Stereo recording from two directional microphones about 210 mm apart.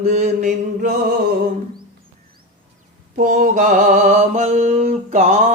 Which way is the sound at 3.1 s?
40° right (ahead or behind).